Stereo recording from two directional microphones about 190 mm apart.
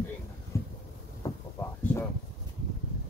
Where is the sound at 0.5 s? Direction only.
15° left (ahead or behind).